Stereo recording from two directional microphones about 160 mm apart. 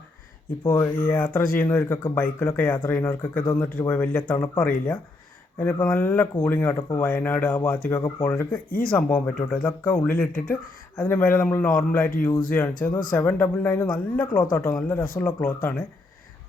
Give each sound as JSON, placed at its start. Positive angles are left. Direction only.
{"t": 0.7, "sound": "speech", "side_deg": 10}